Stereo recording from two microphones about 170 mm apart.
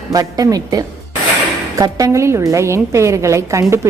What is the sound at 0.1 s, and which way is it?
A woman's voice, 20° right (ahead or behind).